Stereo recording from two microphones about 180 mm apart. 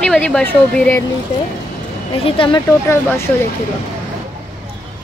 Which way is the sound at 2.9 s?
15° left (ahead or behind).